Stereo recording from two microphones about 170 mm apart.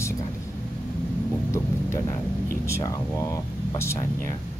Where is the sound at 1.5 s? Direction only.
15° left (ahead or behind).